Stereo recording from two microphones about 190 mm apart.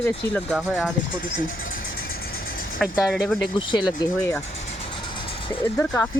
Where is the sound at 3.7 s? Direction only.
25° left (ahead or behind).